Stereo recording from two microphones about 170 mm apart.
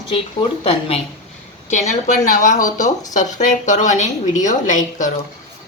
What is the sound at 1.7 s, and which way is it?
A woman's voice, 45° left (ahead or behind).